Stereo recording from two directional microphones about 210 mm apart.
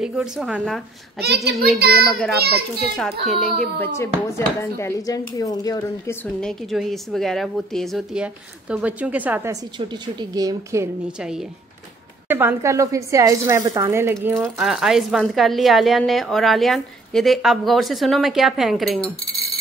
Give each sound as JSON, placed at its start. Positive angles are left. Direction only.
{"t": 0.0, "sound": "speech", "side_deg": 0}
{"t": 1.2, "sound": "a child's voice", "side_deg": -50}
{"t": 2.0, "sound": "speech", "side_deg": 0}
{"t": 2.3, "sound": "a child's voice", "side_deg": -50}
{"t": 3.0, "sound": "speech", "side_deg": 0}
{"t": 6.4, "sound": "speech", "side_deg": 0}